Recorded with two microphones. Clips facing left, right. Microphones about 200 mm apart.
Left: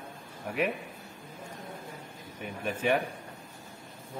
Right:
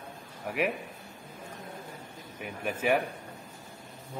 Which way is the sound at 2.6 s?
10° right (ahead or behind).